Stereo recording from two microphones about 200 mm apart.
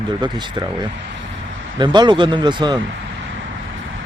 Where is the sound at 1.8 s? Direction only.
20° right (ahead or behind).